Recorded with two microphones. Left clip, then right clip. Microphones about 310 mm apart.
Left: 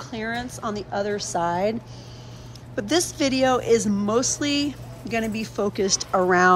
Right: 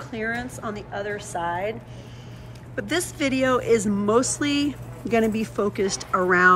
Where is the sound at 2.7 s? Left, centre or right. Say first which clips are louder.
Left 3 dB; centre.